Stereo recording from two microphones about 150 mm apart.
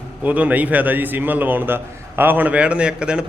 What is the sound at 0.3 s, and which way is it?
A man's voice, 10° right (ahead or behind).